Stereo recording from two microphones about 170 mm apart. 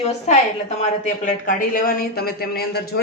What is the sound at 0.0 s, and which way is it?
A woman's voice, 40° left (ahead or behind).